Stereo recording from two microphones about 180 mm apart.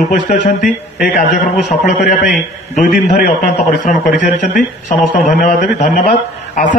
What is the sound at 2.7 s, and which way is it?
A man's voice, 50° left (ahead or behind).